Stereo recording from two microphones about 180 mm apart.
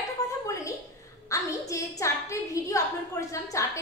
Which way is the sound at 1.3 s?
20° left (ahead or behind).